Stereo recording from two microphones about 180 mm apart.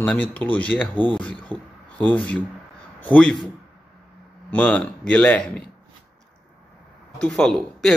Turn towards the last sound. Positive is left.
turn(degrees=0)  # may be behind; listen again after turning